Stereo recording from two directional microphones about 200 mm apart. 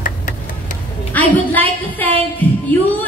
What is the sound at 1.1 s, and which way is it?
A woman's voice, 10° left (ahead or behind).